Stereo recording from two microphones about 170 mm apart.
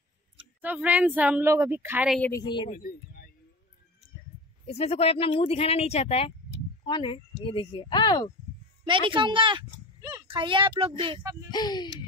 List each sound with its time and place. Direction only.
0.6 s speech: 10° right (ahead or behind)
2.3 s speech: 25° left (ahead or behind)
2.7 s speech: 55° left (ahead or behind)
4.6 s speech: 35° left (ahead or behind)
8.8 s speech: 30° right (ahead or behind)
11.5 s speech: 25° left (ahead or behind)